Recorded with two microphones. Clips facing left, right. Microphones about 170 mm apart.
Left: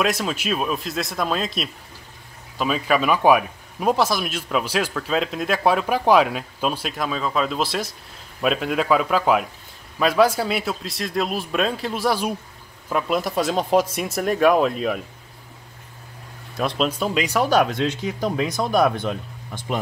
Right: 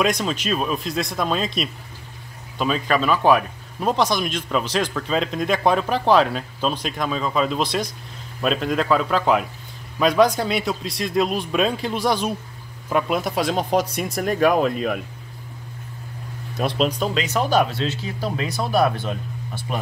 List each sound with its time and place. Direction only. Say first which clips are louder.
0.0 s speech: right 1 dB; 5° left (ahead or behind)
16.5 s speech: right 1 dB; centre (ahead or behind)
17.5 s speech: even; 10° right (ahead or behind)
18.2 s speech: left 2 dB; 15° left (ahead or behind)